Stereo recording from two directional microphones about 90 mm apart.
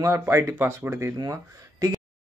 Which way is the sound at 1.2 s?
40° right (ahead or behind).